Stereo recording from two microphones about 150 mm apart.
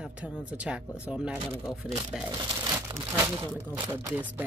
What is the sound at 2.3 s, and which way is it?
Speech, 30° right (ahead or behind).